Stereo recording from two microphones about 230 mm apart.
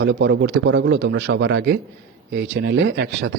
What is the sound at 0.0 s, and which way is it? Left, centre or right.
Speech, right.